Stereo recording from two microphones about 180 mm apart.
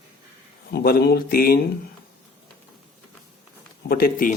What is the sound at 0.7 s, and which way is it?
Speech, 60° left (ahead or behind).